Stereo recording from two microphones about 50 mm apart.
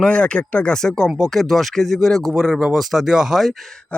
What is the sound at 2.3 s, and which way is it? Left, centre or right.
Speech, centre.